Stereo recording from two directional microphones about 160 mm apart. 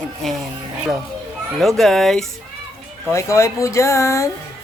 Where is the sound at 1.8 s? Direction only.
Centre (ahead or behind).